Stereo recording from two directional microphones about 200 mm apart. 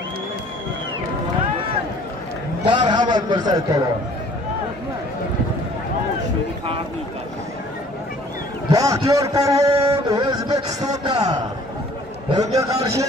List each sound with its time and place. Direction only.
2.6 s a man's voice: 20° right (ahead or behind)
8.6 s a man's voice: 15° right (ahead or behind)
12.5 s a man's voice: 15° right (ahead or behind)